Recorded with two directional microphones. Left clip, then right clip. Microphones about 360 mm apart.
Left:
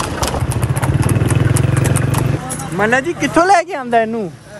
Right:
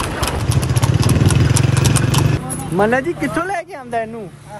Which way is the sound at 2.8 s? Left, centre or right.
Centre.